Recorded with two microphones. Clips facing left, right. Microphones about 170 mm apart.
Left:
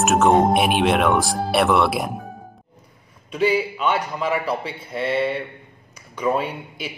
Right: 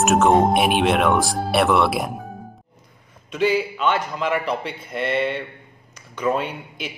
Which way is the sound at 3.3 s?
5° left (ahead or behind).